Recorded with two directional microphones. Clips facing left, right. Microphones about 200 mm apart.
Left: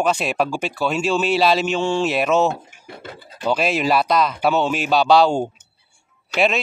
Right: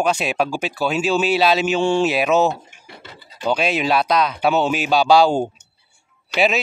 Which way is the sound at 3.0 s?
50° left (ahead or behind).